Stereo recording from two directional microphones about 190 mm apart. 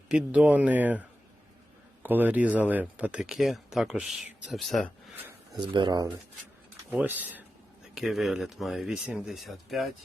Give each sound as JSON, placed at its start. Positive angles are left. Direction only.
{"t": 0.1, "sound": "speech", "side_deg": -5}
{"t": 2.0, "sound": "speech", "side_deg": -10}
{"t": 5.7, "sound": "speech", "side_deg": -25}
{"t": 6.9, "sound": "speech", "side_deg": -10}